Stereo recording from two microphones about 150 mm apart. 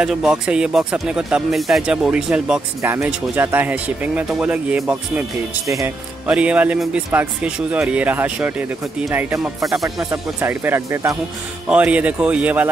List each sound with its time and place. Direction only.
0.0 s a man's voice: 5° right (ahead or behind)
5.7 s speech: 20° right (ahead or behind)
6.2 s a man's voice: 10° right (ahead or behind)
10.1 s a man's voice: 15° right (ahead or behind)